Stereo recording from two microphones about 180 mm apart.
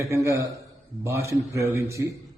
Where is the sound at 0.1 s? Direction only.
15° right (ahead or behind).